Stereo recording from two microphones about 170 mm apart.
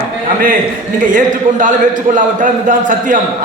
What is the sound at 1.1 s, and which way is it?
A man's voice, 45° right (ahead or behind).